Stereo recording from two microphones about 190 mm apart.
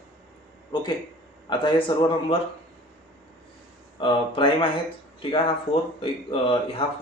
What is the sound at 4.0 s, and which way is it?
A man's voice, 25° left (ahead or behind).